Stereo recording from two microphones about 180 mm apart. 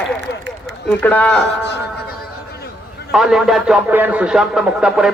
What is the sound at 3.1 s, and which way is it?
A man's voice, centre (ahead or behind).